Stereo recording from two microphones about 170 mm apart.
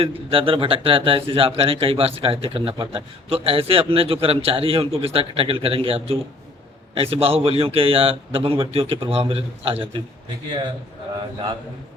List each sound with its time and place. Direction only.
0.0 s speech: 35° right (ahead or behind)